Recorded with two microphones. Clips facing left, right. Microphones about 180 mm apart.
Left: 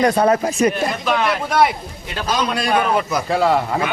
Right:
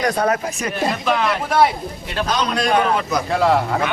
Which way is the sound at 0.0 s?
30° left (ahead or behind).